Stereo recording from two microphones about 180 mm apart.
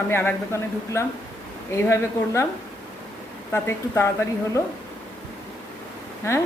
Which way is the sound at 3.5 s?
15° left (ahead or behind).